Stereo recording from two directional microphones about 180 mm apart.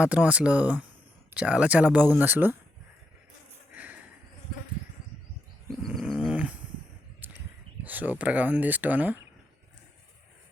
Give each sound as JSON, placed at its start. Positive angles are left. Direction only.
{"t": 0.0, "sound": "speech", "side_deg": -5}
{"t": 5.8, "sound": "a sound", "side_deg": 0}
{"t": 7.9, "sound": "speech", "side_deg": -10}